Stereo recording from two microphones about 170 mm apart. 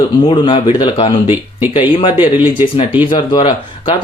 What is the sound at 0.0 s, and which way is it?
Speech, 30° left (ahead or behind).